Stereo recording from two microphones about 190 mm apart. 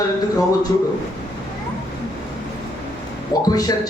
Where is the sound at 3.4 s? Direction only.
20° left (ahead or behind).